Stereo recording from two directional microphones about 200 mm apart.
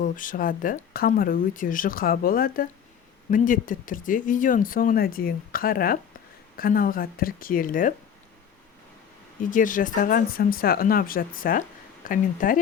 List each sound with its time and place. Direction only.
0.0 s speech: 40° left (ahead or behind)
9.5 s speech: 40° left (ahead or behind)